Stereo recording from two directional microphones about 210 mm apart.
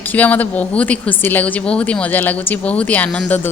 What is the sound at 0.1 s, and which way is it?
Speech, 5° left (ahead or behind).